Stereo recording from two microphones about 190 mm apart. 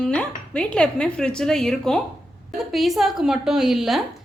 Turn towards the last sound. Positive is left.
turn(degrees=0)  # may be behind; listen again after turning